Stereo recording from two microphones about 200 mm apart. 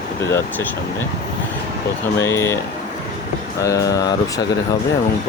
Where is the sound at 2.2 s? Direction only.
15° left (ahead or behind).